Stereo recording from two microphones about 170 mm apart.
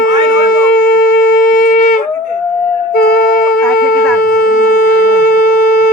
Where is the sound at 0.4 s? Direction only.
55° left (ahead or behind).